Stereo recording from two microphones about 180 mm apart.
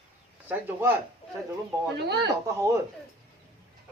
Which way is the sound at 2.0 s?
65° right (ahead or behind).